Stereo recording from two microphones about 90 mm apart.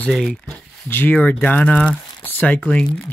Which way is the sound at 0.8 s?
25° left (ahead or behind).